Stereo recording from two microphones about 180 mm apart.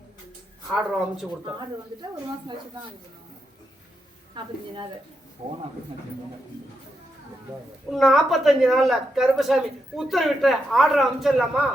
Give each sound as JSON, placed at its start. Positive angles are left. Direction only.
{"t": 0.7, "sound": "a woman's voice", "side_deg": 0}
{"t": 5.4, "sound": "speech", "side_deg": -30}
{"t": 7.9, "sound": "a woman's voice", "side_deg": 0}